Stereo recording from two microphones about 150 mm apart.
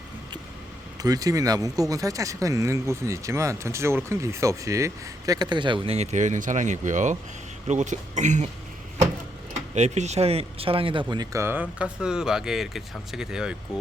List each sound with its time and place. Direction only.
1.0 s speech: 25° right (ahead or behind); by 8.4 s 55° right (ahead or behind)
9.7 s speech: 50° right (ahead or behind); by 13.6 s 5° right (ahead or behind)